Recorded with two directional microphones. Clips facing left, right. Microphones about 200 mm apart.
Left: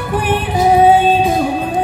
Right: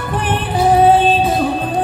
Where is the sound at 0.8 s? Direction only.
10° left (ahead or behind).